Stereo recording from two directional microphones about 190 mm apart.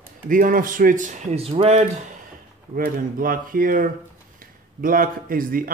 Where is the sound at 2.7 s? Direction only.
50° right (ahead or behind).